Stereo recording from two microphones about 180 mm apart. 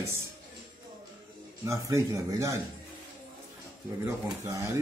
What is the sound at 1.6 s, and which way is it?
Speech, 15° right (ahead or behind).